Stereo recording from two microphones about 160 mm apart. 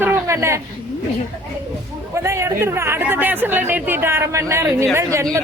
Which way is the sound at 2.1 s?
15° right (ahead or behind).